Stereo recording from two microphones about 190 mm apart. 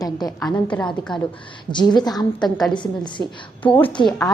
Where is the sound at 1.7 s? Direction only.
25° left (ahead or behind).